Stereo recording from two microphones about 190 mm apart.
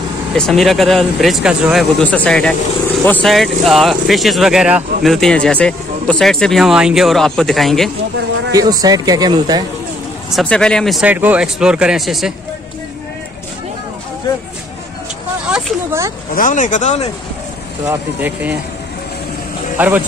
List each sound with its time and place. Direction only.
0.3 s speech: centre (ahead or behind)
8.5 s speech: 20° right (ahead or behind)
10.3 s speech: 5° left (ahead or behind)
15.4 s a sound: 10° right (ahead or behind)
16.3 s speech: 45° left (ahead or behind)
17.8 s speech: 10° right (ahead or behind)
19.8 s speech: 10° right (ahead or behind)